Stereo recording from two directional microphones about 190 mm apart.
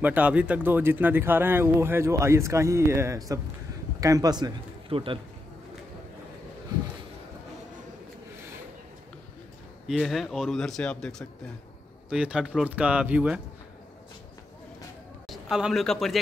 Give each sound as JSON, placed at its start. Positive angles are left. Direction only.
{"t": 0.0, "sound": "a man's voice", "side_deg": -10}
{"t": 9.8, "sound": "speech", "side_deg": 0}
{"t": 15.2, "sound": "a man's voice", "side_deg": 0}